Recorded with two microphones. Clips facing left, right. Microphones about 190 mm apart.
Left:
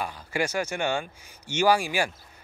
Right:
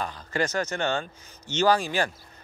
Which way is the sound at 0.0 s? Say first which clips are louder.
Right 1 dB; 10° left (ahead or behind).